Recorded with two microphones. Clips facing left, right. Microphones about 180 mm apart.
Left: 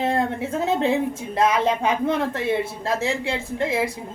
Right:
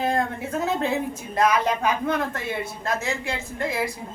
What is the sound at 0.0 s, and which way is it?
Speech, 25° left (ahead or behind).